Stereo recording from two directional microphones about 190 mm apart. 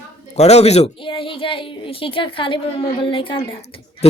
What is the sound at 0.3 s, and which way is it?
A woman's voice, 35° left (ahead or behind).